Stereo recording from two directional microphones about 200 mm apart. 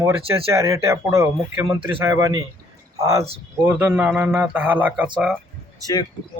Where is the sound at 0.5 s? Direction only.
15° right (ahead or behind).